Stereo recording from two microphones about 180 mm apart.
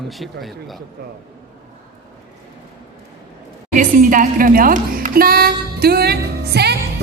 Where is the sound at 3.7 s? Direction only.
45° right (ahead or behind); by 7.0 s 65° right (ahead or behind).